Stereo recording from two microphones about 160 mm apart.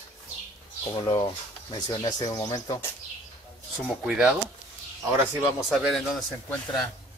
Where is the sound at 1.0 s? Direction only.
25° left (ahead or behind).